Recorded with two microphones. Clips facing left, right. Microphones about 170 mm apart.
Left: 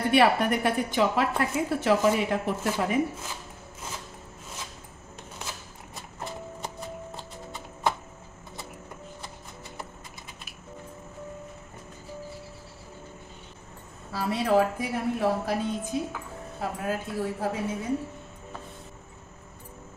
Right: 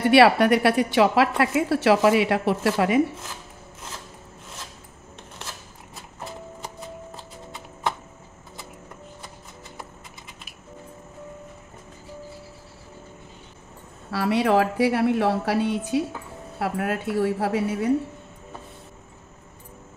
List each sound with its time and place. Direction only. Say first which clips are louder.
0.1 s a woman's voice: right 6 dB; 75° right (ahead or behind)
14.1 s a woman's voice: right 3 dB; 70° right (ahead or behind)